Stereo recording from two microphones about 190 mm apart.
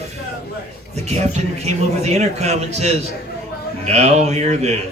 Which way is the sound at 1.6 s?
35° right (ahead or behind).